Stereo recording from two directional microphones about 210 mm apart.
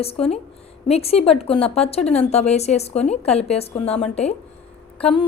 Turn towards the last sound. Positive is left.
turn(degrees=25)  # may be behind; listen again after turning